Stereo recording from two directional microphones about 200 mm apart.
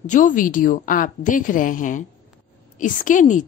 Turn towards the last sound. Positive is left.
turn(degrees=40)  # may be behind; listen again after turning